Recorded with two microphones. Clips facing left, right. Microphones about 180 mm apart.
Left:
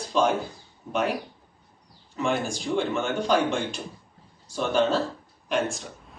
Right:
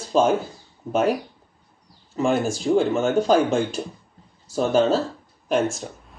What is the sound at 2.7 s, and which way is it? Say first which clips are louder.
Speech: right 7 dB; 40° right (ahead or behind).